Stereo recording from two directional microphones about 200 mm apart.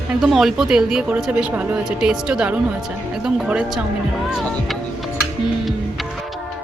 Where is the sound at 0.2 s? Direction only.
Centre (ahead or behind).